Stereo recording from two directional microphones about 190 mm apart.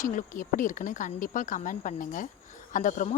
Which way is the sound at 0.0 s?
45° left (ahead or behind).